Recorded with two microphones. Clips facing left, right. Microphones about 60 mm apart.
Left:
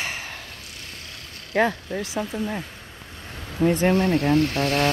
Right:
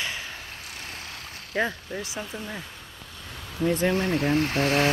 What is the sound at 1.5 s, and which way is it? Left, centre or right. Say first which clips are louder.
Speech: left 6 dB; left.